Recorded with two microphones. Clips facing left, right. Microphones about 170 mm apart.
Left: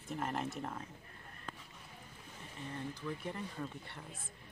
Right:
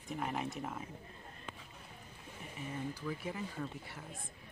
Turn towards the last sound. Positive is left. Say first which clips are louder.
# right 2 dB
turn(degrees=0)  # may be behind; listen again after turning